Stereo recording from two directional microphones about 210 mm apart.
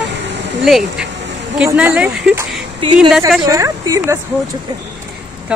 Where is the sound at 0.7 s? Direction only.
Centre (ahead or behind).